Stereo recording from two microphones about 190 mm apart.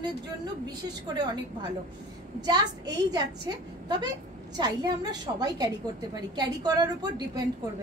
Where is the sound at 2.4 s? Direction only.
20° right (ahead or behind).